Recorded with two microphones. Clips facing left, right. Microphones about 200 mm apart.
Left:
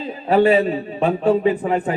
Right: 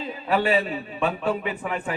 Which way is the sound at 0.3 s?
35° left (ahead or behind).